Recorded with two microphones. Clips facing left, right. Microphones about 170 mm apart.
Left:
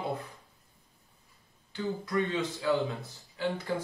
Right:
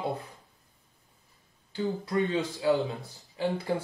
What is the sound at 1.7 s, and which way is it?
Speech, 35° right (ahead or behind).